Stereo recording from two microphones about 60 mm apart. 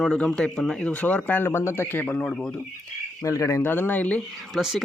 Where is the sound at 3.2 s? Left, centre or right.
Left.